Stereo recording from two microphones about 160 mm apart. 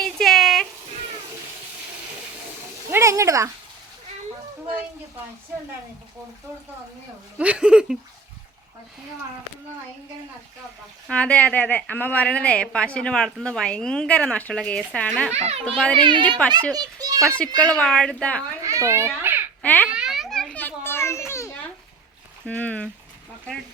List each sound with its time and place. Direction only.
0.0 s a sound: centre (ahead or behind)
2.9 s a sound: 20° right (ahead or behind)
7.3 s speech: 5° right (ahead or behind)
11.1 s a woman's voice: 10° left (ahead or behind)
15.3 s a child's voice: 40° right (ahead or behind)
16.0 s a child's voice: 30° right (ahead or behind)
17.2 s a woman's voice: 10° left (ahead or behind)
18.6 s a child's voice: 20° right (ahead or behind)
19.6 s a woman's voice: 10° left (ahead or behind)
19.9 s children playing: 5° right (ahead or behind); by 21.5 s 15° left (ahead or behind)
22.4 s a woman's voice: 10° left (ahead or behind)